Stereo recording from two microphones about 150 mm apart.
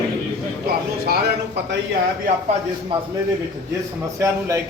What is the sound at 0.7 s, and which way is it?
Speech, 90° right.